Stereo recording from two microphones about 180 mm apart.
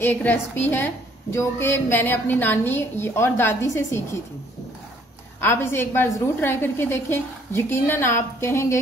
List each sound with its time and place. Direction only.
0.0 s a woman's voice: 10° left (ahead or behind)
5.4 s a woman's voice: 10° left (ahead or behind)